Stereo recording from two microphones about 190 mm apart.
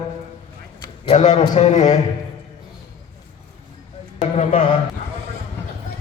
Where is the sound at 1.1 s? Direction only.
40° left (ahead or behind).